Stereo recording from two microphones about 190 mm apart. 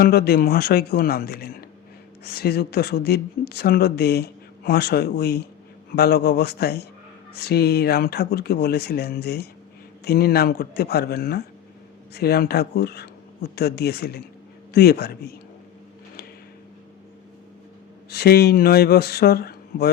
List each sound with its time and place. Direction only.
0.0 s speech: 55° left (ahead or behind)
18.1 s speech: 55° left (ahead or behind)